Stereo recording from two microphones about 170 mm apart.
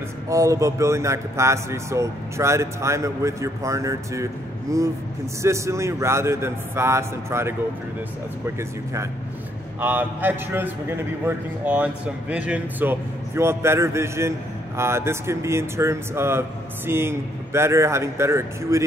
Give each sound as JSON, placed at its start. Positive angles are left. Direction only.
{"t": 0.3, "sound": "a man's voice", "side_deg": -20}
{"t": 5.4, "sound": "a man's voice", "side_deg": -15}
{"t": 9.8, "sound": "a man's voice", "side_deg": -10}